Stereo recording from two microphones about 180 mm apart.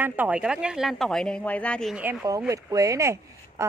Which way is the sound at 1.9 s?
15° right (ahead or behind).